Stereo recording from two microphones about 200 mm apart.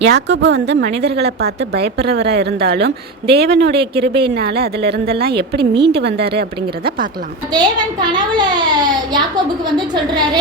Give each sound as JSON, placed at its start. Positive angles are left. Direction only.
{"t": 0.0, "sound": "a woman's voice", "side_deg": -60}
{"t": 5.5, "sound": "a child's voice", "side_deg": -25}
{"t": 5.9, "sound": "speech", "side_deg": -55}
{"t": 7.5, "sound": "a child's voice", "side_deg": -20}